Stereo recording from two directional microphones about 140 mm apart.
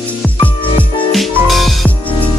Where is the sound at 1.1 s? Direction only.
Centre (ahead or behind).